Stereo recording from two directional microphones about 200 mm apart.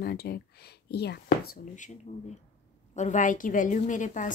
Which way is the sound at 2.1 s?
35° left (ahead or behind).